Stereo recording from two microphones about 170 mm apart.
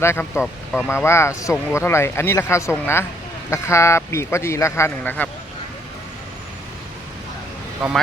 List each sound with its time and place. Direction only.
0.0 s speech: 15° left (ahead or behind)
0.4 s speech: centre (ahead or behind)
0.9 s speech: 15° left (ahead or behind)